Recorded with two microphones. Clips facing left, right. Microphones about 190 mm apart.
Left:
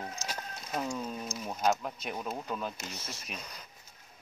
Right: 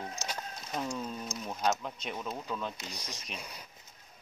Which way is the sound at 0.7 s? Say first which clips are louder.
Left 1 dB; 5° left (ahead or behind).